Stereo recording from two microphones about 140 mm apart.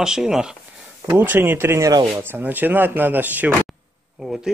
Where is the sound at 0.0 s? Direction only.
5° right (ahead or behind).